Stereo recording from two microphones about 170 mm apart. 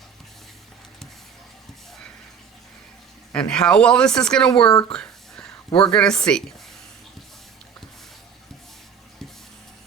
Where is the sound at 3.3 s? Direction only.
5° left (ahead or behind).